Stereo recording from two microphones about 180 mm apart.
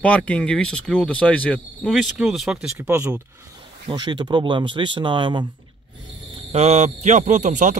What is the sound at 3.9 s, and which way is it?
Speech, 25° right (ahead or behind).